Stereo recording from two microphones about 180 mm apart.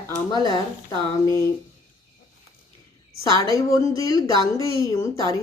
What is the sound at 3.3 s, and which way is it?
A woman's voice, 20° left (ahead or behind).